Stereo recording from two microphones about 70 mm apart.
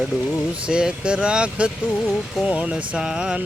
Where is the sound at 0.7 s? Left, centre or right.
Centre.